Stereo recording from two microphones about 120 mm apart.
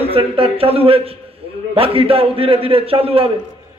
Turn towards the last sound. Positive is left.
turn(degrees=-55)  # may be behind; listen again after turning